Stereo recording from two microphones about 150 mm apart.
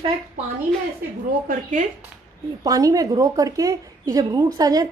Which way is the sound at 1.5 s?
60° right (ahead or behind).